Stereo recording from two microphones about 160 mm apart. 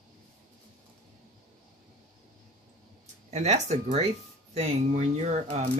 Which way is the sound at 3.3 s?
45° right (ahead or behind).